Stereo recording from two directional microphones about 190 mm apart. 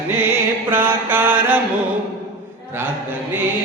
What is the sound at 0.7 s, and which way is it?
Mantra, 10° right (ahead or behind).